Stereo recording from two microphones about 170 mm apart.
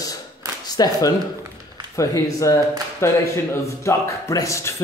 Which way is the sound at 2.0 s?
20° left (ahead or behind).